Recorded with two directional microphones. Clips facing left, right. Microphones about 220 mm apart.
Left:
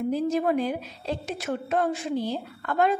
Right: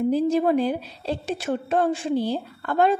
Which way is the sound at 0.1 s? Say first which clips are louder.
Right 2 dB; 30° right (ahead or behind).